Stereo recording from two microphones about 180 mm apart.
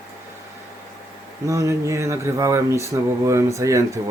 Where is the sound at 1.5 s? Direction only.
15° right (ahead or behind).